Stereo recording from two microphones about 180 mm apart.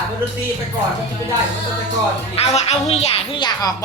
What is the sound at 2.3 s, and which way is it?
Speech, 35° left (ahead or behind).